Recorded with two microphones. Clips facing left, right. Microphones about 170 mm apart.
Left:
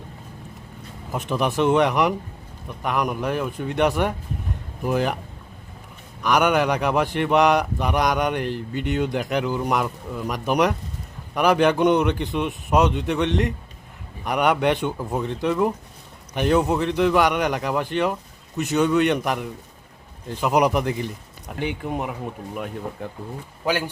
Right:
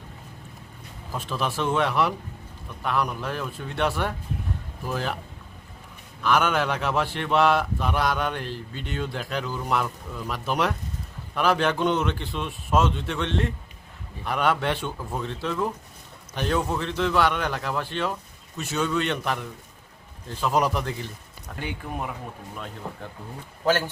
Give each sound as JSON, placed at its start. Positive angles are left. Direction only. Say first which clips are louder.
{"t": 1.1, "sound": "a man's voice", "louder": "left 5 dB", "side_deg": 15}
{"t": 6.2, "sound": "a man's voice", "louder": "left 4 dB", "side_deg": 15}
{"t": 8.5, "sound": "speech", "louder": "left 9 dB", "side_deg": 60}
{"t": 9.0, "sound": "a man's voice", "louder": "left 5 dB", "side_deg": 15}
{"t": 23.6, "sound": "a man's voice", "louder": "right 1 dB", "side_deg": 15}